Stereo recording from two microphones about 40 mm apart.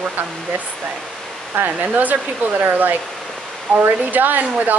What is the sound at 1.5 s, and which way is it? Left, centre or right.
Speech, right.